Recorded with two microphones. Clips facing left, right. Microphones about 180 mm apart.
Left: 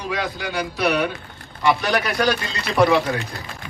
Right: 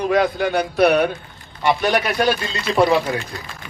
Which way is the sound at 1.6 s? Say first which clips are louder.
Right 2 dB; 25° right (ahead or behind).